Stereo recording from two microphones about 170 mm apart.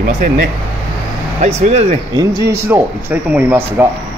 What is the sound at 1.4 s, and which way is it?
Speech, 40° right (ahead or behind).